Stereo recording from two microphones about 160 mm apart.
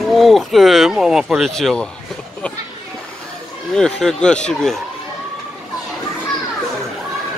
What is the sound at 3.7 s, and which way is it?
Speech, 5° left (ahead or behind).